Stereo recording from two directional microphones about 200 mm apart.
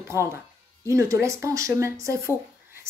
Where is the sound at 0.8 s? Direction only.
15° right (ahead or behind).